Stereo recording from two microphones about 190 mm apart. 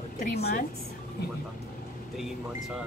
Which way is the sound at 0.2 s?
55° left (ahead or behind).